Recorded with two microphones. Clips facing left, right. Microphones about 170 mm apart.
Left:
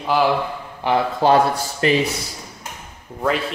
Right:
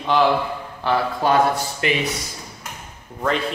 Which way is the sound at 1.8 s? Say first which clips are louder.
Left 5 dB; 35° left (ahead or behind).